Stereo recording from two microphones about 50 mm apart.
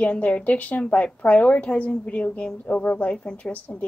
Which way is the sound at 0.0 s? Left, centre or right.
Left.